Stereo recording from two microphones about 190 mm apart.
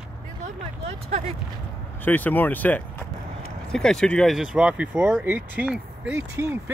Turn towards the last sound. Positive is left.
turn(degrees=-10)  # may be behind; listen again after turning